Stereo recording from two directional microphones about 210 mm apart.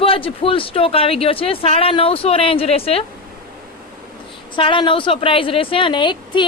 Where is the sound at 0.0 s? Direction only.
25° left (ahead or behind).